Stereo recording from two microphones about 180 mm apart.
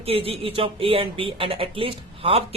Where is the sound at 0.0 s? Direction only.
30° right (ahead or behind).